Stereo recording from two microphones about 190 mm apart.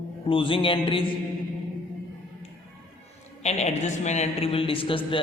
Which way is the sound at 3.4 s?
35° left (ahead or behind).